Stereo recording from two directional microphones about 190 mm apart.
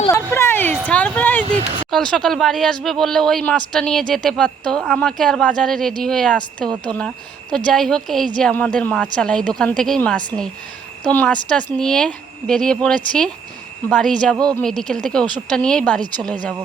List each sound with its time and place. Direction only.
0.1 s a sound: 10° left (ahead or behind)
0.9 s speech: 5° left (ahead or behind)
1.5 s speech: 25° right (ahead or behind)
1.9 s a woman's voice: centre (ahead or behind)
14.3 s speech: 20° right (ahead or behind)
14.6 s a woman's voice: centre (ahead or behind)